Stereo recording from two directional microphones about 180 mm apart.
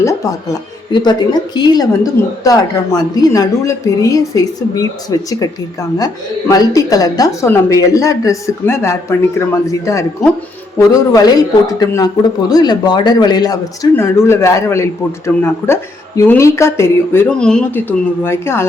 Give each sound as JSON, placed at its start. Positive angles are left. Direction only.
{"t": 0.0, "sound": "a woman's voice", "side_deg": 20}
{"t": 6.5, "sound": "a woman's voice", "side_deg": 20}